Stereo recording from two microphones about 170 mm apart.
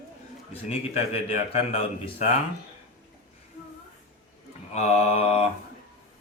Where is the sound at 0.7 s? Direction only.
35° left (ahead or behind).